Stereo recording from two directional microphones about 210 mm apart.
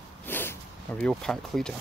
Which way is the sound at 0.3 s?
10° left (ahead or behind).